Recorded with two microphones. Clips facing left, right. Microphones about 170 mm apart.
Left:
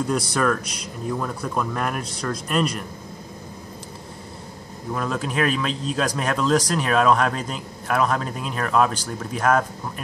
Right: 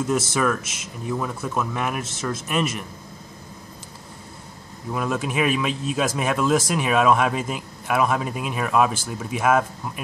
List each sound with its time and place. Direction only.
0.3 s speech: 5° right (ahead or behind)
4.9 s speech: 5° right (ahead or behind)